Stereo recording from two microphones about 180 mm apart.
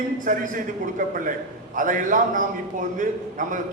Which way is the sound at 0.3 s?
50° right (ahead or behind).